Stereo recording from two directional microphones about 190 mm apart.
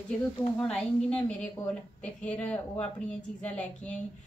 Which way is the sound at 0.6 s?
5° left (ahead or behind).